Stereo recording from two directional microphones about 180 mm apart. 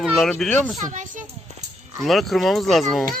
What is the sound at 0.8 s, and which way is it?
Speech, 45° right (ahead or behind).